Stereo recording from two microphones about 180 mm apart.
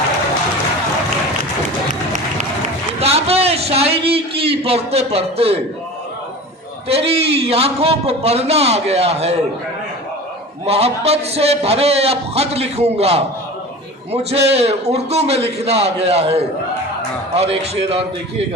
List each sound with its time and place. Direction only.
3.0 s a sound: 35° right (ahead or behind)
6.8 s a man's voice: 35° right (ahead or behind)
10.7 s a man's voice: 35° right (ahead or behind)